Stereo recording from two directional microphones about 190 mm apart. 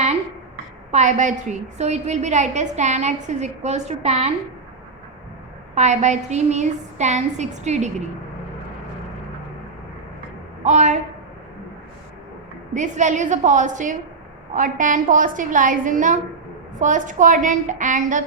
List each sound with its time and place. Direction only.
0.9 s a woman's voice: 35° right (ahead or behind)
5.7 s a woman's voice: 35° right (ahead or behind)
10.6 s a woman's voice: 40° right (ahead or behind)
12.7 s a woman's voice: 40° right (ahead or behind)